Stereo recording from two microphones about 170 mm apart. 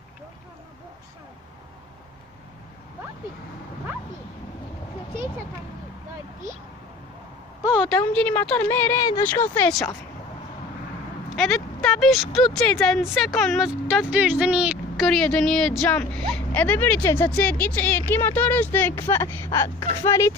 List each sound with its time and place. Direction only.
7.6 s a sound: centre (ahead or behind)
8.0 s speech: 10° left (ahead or behind)
11.3 s speech: centre (ahead or behind)
19.8 s speech: 30° left (ahead or behind)
20.1 s speech: 15° left (ahead or behind)